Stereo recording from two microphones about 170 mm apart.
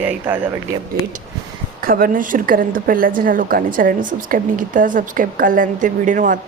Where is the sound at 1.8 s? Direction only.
55° right (ahead or behind).